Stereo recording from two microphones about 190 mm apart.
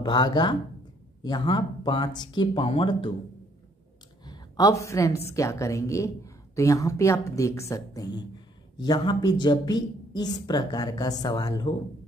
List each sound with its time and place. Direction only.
0.0 s speech: 25° left (ahead or behind)
4.2 s a woman's voice: 20° left (ahead or behind)